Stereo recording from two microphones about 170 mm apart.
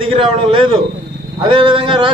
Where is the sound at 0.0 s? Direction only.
30° right (ahead or behind).